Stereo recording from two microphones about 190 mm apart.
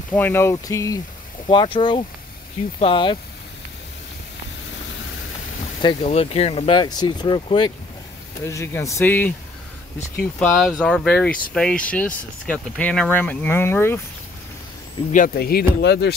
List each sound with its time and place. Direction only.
0.1 s speech: 10° left (ahead or behind); by 3.2 s 25° left (ahead or behind)
5.8 s speech: 30° left (ahead or behind)
8.5 s speech: 15° left (ahead or behind)
10.5 s speech: centre (ahead or behind)
15.1 s speech: 50° left (ahead or behind)